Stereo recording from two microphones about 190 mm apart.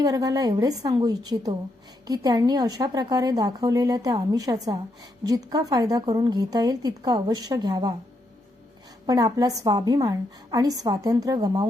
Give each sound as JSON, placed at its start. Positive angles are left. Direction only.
{"t": 0.0, "sound": "speech", "side_deg": -20}
{"t": 9.0, "sound": "speech", "side_deg": -20}